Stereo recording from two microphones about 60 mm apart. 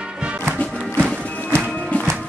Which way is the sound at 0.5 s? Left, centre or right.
Left.